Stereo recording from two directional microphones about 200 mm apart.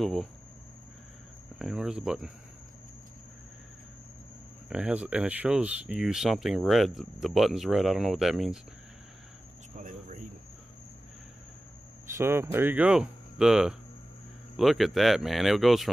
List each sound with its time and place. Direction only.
0.0 s speech: centre (ahead or behind)
1.6 s speech: 5° right (ahead or behind)
4.6 s speech: 5° right (ahead or behind)
9.8 s a sound: 40° right (ahead or behind)
12.2 s hum: 10° right (ahead or behind)
14.6 s speech: centre (ahead or behind)